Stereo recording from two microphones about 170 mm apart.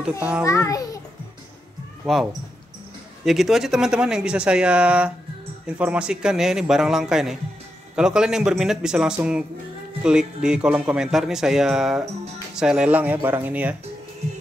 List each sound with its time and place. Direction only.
0.2 s speech: 5° right (ahead or behind)
0.5 s a child's voice: 20° left (ahead or behind)
2.0 s speech: 5° left (ahead or behind)
3.3 s speech: centre (ahead or behind)